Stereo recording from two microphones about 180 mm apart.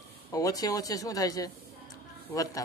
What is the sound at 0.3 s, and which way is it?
A man's voice, 20° left (ahead or behind).